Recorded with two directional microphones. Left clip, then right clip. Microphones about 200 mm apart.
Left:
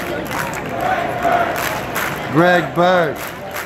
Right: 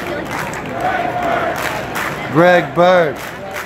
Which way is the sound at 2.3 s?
Centre (ahead or behind).